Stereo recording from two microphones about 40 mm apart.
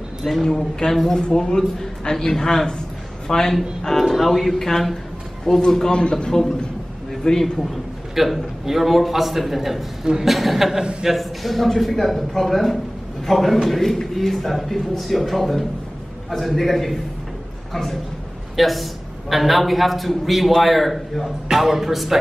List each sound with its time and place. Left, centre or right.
0.2 s a man's voice: centre
1.3 s a man's voice: centre
4.0 s a man's voice: centre; by 6.3 s left
7.2 s a man's voice: centre
8.1 s a man's voice: centre
10.8 s a man's voice: centre
11.1 s a man's voice: centre
18.6 s a man's voice: centre